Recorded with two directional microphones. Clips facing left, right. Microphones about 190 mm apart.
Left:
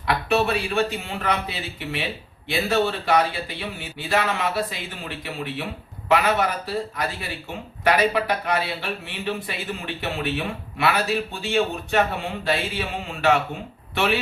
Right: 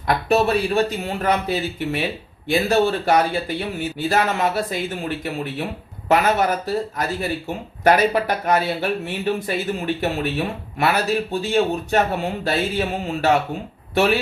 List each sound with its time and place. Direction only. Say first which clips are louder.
0.1 s a man's voice: right 4 dB; 40° right (ahead or behind)